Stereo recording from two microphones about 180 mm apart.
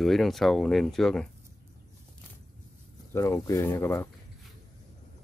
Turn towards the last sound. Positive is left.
turn(degrees=15)  # may be behind; listen again after turning